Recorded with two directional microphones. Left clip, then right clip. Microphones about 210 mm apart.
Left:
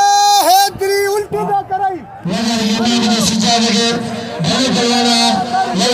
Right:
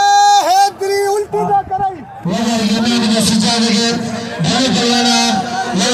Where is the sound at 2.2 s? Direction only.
10° left (ahead or behind).